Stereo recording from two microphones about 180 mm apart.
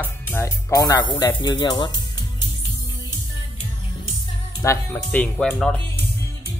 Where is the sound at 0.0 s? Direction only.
15° left (ahead or behind).